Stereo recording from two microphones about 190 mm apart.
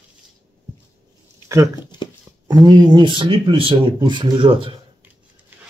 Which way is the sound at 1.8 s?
25° left (ahead or behind).